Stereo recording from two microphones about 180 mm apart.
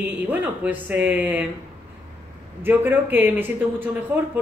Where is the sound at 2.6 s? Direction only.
10° right (ahead or behind).